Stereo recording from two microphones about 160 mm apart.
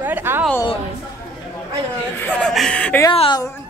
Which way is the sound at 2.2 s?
10° left (ahead or behind).